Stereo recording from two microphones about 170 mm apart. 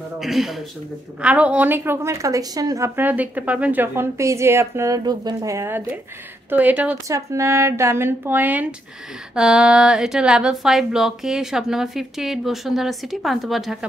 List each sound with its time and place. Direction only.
0.2 s a woman's voice: centre (ahead or behind)